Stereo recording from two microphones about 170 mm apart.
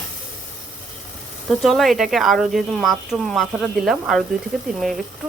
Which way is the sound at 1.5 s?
Centre (ahead or behind).